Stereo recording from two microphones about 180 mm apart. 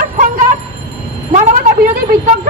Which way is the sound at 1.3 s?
50° right (ahead or behind).